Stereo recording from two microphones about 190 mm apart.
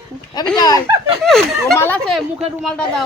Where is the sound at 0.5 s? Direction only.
20° left (ahead or behind).